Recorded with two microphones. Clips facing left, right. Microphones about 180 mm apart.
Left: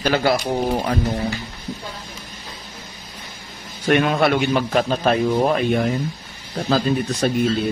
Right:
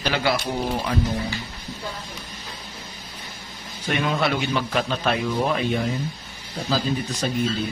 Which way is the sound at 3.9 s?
60° left (ahead or behind).